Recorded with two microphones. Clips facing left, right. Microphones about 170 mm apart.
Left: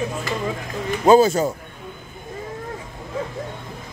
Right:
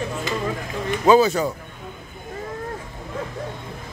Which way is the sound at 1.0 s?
45° left (ahead or behind).